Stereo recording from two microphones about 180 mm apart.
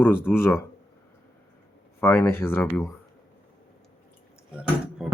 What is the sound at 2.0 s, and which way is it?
Speech, 15° left (ahead or behind).